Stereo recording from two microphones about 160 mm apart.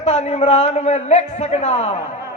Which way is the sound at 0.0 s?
40° left (ahead or behind).